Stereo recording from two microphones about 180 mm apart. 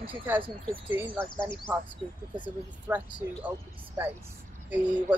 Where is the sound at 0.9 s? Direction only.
10° right (ahead or behind).